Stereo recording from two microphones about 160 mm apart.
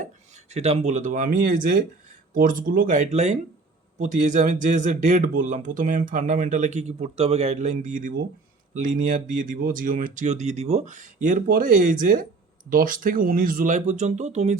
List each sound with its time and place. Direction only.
0.5 s speech: 40° right (ahead or behind)